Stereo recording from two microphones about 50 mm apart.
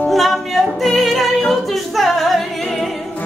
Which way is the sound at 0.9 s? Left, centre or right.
Centre.